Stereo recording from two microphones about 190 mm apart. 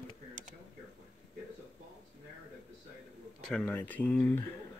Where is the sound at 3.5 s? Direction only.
10° left (ahead or behind).